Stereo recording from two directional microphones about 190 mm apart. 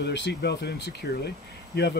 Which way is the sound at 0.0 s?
65° left (ahead or behind).